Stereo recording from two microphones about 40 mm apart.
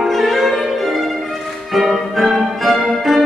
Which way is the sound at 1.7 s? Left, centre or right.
Centre.